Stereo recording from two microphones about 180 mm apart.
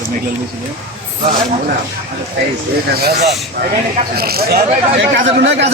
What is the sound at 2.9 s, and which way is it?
Speech, 60° right (ahead or behind).